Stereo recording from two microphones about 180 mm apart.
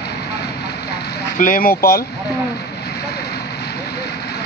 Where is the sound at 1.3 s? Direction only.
50° left (ahead or behind).